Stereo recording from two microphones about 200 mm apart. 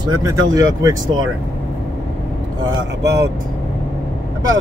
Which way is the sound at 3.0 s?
60° right (ahead or behind).